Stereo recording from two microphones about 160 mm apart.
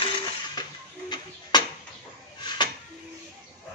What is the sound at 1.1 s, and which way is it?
Tick-tock, 30° left (ahead or behind).